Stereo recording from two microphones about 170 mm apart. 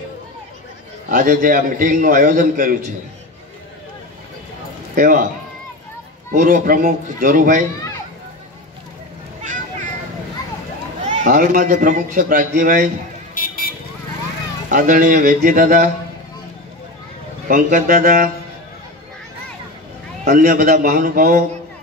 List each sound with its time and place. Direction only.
1.0 s a man's voice: 55° right (ahead or behind)
4.9 s speech: 50° right (ahead or behind)
6.3 s a man's voice: 50° right (ahead or behind)
9.4 s a sound: 45° right (ahead or behind)
11.1 s a man's voice: 50° right (ahead or behind)
14.7 s a man's voice: 55° right (ahead or behind)
17.5 s a man's voice: 55° right (ahead or behind)
20.2 s a man's voice: 55° right (ahead or behind)